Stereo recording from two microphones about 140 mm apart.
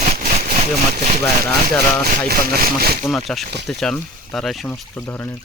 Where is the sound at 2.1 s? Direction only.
90° right.